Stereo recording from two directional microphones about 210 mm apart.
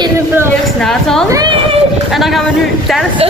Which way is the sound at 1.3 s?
20° right (ahead or behind).